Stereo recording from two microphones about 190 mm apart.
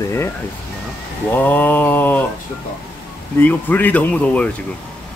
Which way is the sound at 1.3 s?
10° left (ahead or behind).